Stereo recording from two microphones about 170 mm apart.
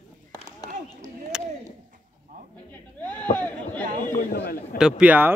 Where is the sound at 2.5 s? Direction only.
10° left (ahead or behind).